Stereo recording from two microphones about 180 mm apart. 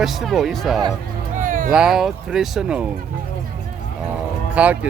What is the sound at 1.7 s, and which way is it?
Speech, 5° right (ahead or behind).